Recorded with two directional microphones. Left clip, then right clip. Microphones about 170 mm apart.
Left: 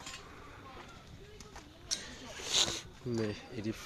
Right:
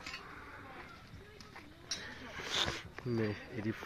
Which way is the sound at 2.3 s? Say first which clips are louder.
Left 4 dB; 15° left (ahead or behind).